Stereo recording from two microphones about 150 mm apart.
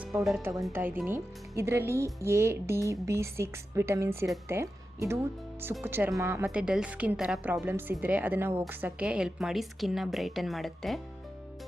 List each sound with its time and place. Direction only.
0.0 s speech: centre (ahead or behind)
0.7 s speech: 15° right (ahead or behind)
6.5 s a woman's voice: 5° right (ahead or behind)